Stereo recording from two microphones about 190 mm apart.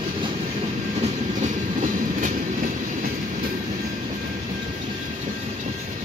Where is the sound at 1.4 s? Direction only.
40° right (ahead or behind).